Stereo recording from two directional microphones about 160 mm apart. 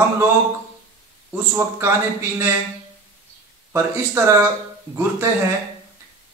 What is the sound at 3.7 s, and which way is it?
A man's voice, 15° right (ahead or behind).